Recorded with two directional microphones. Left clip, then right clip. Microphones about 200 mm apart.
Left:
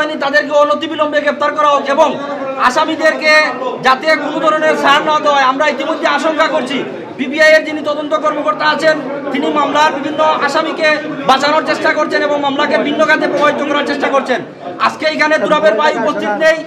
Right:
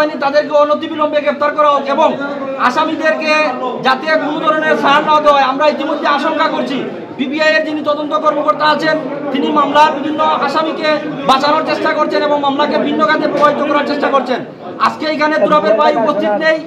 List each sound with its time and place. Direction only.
0.2 s a man's voice: 25° left (ahead or behind)
8.1 s a man's voice: 20° left (ahead or behind)